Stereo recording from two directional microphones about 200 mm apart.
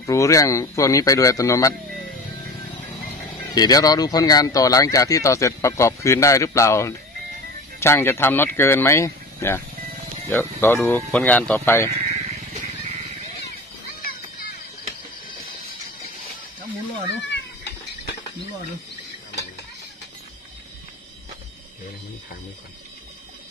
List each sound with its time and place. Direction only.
0.0 s speech: 15° left (ahead or behind)
3.5 s speech: 20° left (ahead or behind)
10.6 s speech: 10° left (ahead or behind)
17.3 s cat: 55° left (ahead or behind)